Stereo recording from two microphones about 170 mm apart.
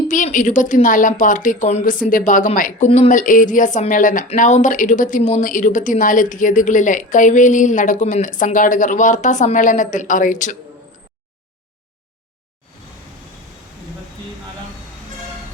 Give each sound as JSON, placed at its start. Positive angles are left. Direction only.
{"t": 0.1, "sound": "speech", "side_deg": 50}